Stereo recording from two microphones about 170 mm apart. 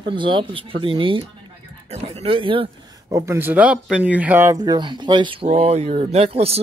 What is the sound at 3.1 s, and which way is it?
Speech, 15° right (ahead or behind).